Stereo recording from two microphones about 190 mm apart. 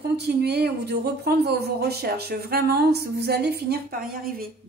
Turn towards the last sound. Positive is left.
turn(degrees=-50)  # may be behind; listen again after turning